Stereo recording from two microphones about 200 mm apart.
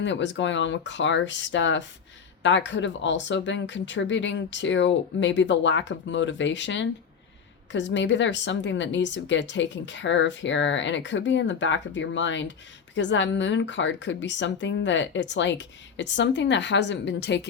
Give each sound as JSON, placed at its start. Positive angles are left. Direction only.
{"t": 0.0, "sound": "speech", "side_deg": 65}